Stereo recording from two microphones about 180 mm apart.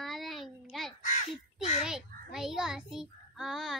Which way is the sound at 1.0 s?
45° left (ahead or behind).